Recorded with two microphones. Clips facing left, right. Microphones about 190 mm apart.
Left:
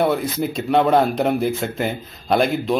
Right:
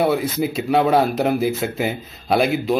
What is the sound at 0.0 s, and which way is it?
Speech, 5° right (ahead or behind).